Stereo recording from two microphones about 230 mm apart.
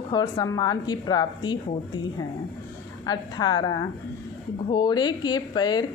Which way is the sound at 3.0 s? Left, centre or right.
Centre.